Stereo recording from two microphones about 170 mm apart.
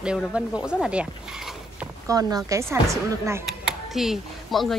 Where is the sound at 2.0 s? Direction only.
20° right (ahead or behind).